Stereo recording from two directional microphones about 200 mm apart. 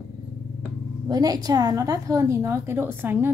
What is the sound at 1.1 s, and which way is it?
A woman's voice, 20° right (ahead or behind).